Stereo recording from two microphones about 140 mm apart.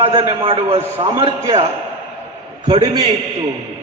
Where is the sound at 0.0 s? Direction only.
45° right (ahead or behind).